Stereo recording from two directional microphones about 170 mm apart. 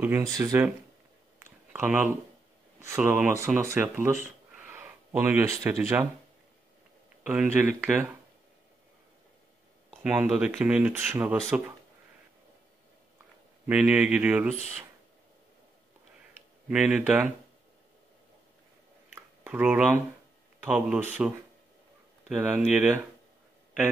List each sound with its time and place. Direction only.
0.0 s speech: 15° right (ahead or behind)
1.4 s a sound: 10° right (ahead or behind)
2.8 s speech: 15° right (ahead or behind)
4.6 s a sound: 10° right (ahead or behind)
7.2 s speech: 10° right (ahead or behind)
9.8 s speech: 10° right (ahead or behind)
13.7 s speech: 10° right (ahead or behind)
16.6 s speech: 5° right (ahead or behind)
19.1 s a sound: 15° right (ahead or behind)
20.6 s speech: 5° right (ahead or behind)
22.3 s speech: 5° right (ahead or behind)